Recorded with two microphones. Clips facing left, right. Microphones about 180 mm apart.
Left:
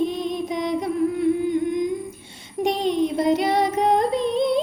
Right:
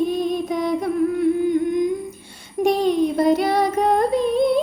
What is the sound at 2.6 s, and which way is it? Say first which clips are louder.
Female singing: right 3 dB; 20° left (ahead or behind).